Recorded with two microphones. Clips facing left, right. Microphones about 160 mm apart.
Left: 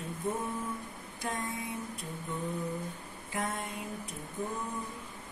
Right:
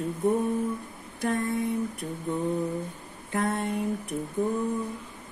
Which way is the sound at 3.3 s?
65° right (ahead or behind).